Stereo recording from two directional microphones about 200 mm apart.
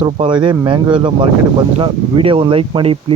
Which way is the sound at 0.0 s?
25° right (ahead or behind).